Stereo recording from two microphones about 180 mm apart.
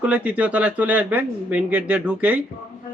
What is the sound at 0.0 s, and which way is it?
Speech, 5° right (ahead or behind).